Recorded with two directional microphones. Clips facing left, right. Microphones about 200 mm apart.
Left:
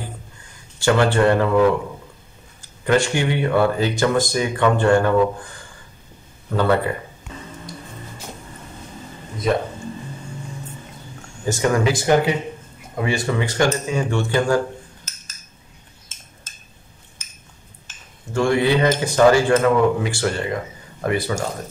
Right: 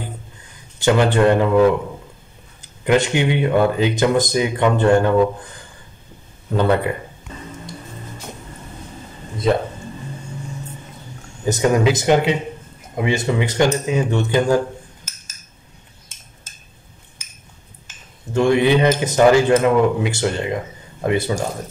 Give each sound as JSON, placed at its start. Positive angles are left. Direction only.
{"t": 0.7, "sound": "speech", "side_deg": -20}
{"t": 2.8, "sound": "speech", "side_deg": -20}
{"t": 6.5, "sound": "speech", "side_deg": -20}
{"t": 11.4, "sound": "speech", "side_deg": -20}
{"t": 18.3, "sound": "speech", "side_deg": -20}